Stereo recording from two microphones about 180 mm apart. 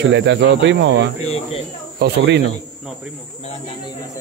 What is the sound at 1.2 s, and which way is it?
Speech, 35° left (ahead or behind).